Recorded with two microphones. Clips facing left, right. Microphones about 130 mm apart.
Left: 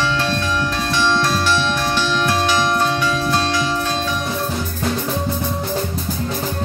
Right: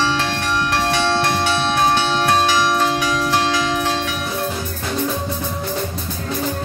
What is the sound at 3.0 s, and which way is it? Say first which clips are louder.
Music: even; 90° right.